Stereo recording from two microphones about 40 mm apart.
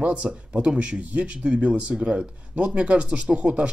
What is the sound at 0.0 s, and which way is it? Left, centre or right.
Speech, right.